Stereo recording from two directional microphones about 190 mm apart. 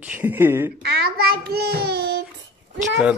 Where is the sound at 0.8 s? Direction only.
55° right (ahead or behind).